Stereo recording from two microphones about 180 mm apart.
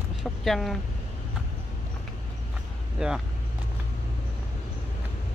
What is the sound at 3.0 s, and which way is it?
Speech, 5° right (ahead or behind).